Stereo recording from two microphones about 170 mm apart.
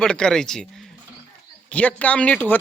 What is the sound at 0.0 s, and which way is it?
Speech, 5° left (ahead or behind).